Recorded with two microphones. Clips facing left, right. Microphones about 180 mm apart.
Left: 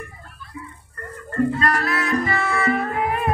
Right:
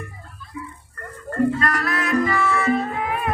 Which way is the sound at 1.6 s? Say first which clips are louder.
Left 1 dB; 30° left (ahead or behind).